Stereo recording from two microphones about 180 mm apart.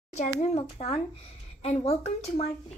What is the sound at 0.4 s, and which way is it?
Speech, 35° left (ahead or behind).